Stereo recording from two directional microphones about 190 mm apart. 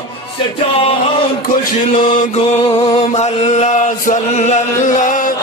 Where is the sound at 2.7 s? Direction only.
30° left (ahead or behind).